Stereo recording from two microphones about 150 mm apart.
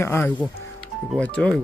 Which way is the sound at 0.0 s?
15° left (ahead or behind).